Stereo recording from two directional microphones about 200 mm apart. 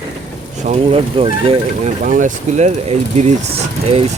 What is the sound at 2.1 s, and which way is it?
Speech, 40° right (ahead or behind).